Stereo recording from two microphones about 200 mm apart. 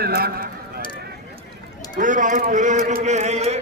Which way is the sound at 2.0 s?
40° right (ahead or behind).